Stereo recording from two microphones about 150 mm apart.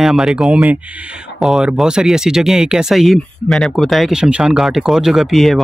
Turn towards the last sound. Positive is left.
turn(degrees=0)  # may be behind; listen again after turning